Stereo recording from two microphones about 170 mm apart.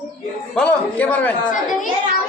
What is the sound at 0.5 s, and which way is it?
Speech, 10° left (ahead or behind).